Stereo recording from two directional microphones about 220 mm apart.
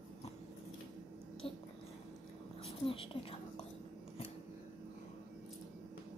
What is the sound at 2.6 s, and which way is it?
Speech, 25° left (ahead or behind).